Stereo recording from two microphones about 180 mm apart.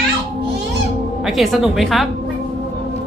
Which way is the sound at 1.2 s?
Centre (ahead or behind).